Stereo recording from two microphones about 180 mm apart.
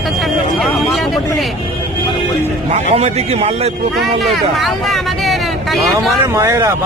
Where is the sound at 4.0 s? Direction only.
Centre (ahead or behind).